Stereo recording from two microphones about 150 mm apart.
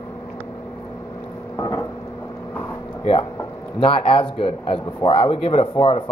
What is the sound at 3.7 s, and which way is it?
Speech, 35° left (ahead or behind).